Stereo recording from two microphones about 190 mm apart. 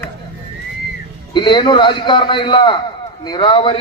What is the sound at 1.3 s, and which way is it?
A man's voice, 25° left (ahead or behind).